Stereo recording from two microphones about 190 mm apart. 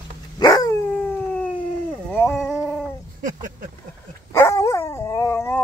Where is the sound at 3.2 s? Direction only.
45° right (ahead or behind).